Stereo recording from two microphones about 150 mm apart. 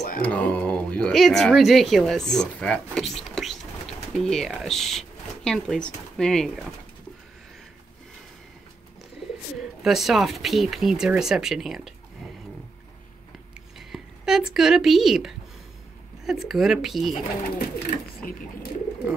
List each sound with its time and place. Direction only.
0.2 s speech: 10° left (ahead or behind)
9.6 s speech: centre (ahead or behind)
13.7 s speech: 5° right (ahead or behind)
17.6 s speech: 90° left